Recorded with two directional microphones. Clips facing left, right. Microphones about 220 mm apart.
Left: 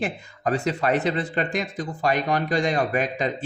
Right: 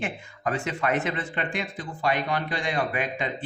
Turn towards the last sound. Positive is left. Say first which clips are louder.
# left 5 dB
turn(degrees=40)  # may be behind; listen again after turning